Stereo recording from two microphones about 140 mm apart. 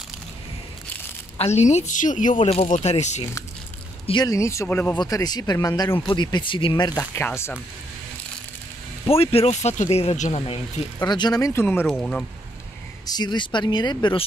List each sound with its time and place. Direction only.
1.4 s speech: 55° left (ahead or behind)
4.0 s a sound: 35° left (ahead or behind)
4.3 s speech: 20° left (ahead or behind)
4.9 s speech: 30° left (ahead or behind)
7.0 s speech: 15° left (ahead or behind)
9.1 s speech: 45° left (ahead or behind)
11.0 s speech: 30° left (ahead or behind)
11.6 s speech: 15° left (ahead or behind)
13.0 s speech: 30° left (ahead or behind)